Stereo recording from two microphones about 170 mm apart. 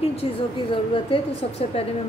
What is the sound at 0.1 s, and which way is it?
A woman's voice, 35° left (ahead or behind).